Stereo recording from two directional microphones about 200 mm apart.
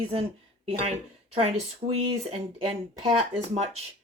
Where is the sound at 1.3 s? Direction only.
30° right (ahead or behind).